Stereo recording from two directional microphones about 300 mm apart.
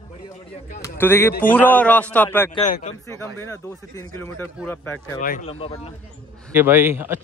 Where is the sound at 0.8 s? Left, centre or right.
Centre.